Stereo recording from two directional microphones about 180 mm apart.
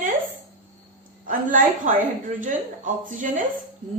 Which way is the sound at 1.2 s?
45° right (ahead or behind).